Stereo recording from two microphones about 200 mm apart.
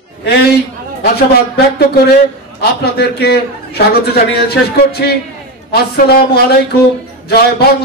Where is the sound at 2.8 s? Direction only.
55° left (ahead or behind).